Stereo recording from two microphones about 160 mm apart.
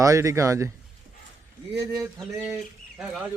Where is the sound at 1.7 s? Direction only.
20° right (ahead or behind).